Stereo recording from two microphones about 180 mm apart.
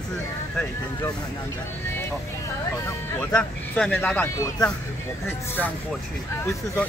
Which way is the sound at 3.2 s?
5° left (ahead or behind).